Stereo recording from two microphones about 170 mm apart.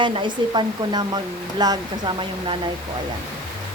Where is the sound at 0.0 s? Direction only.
30° right (ahead or behind).